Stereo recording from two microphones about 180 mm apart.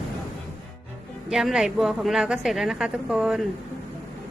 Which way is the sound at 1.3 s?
5° right (ahead or behind).